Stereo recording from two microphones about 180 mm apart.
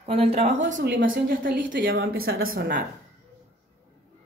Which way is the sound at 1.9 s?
75° right (ahead or behind).